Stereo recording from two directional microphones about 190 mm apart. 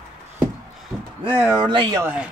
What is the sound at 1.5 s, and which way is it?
Speech, 25° right (ahead or behind).